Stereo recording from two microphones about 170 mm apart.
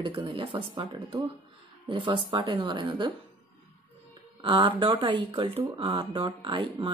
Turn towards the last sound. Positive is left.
turn(degrees=-30)  # may be behind; listen again after turning